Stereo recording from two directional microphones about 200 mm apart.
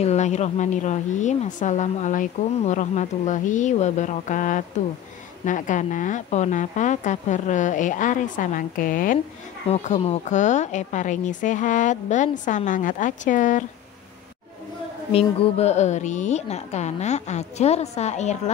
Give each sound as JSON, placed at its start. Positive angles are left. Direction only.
{"t": 0.0, "sound": "a woman's voice", "side_deg": 35}
{"t": 9.7, "sound": "a woman's voice", "side_deg": 30}
{"t": 15.1, "sound": "a woman's voice", "side_deg": 30}